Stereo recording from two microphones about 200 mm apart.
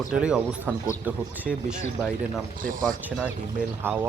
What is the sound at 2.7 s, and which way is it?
Speech, 40° right (ahead or behind).